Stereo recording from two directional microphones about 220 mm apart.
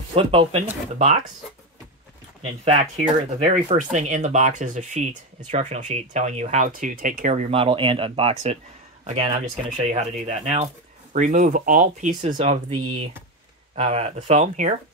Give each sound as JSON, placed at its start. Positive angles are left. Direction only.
{"t": 0.1, "sound": "speech", "side_deg": -25}
{"t": 2.6, "sound": "speech", "side_deg": -35}
{"t": 7.5, "sound": "speech", "side_deg": -25}